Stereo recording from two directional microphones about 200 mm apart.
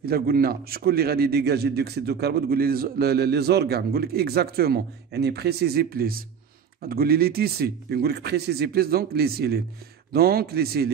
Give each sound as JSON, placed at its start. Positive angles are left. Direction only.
{"t": 0.0, "sound": "a man's voice", "side_deg": -50}